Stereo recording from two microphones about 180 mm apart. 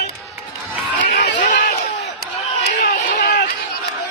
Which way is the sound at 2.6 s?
55° left (ahead or behind).